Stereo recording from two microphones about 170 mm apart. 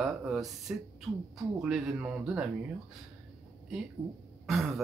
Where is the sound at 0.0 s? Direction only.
5° right (ahead or behind).